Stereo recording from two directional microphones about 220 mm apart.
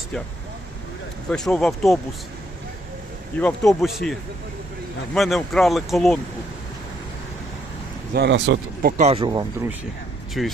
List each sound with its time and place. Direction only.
1.3 s speech: 5° left (ahead or behind)
3.4 s speech: centre (ahead or behind)
8.1 s speech: 50° right (ahead or behind)
9.0 s speech: 25° right (ahead or behind)
10.4 s speech: centre (ahead or behind)